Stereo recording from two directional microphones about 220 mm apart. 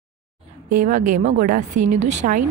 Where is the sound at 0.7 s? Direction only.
35° right (ahead or behind).